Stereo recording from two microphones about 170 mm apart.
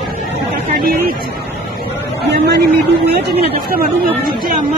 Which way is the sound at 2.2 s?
80° right.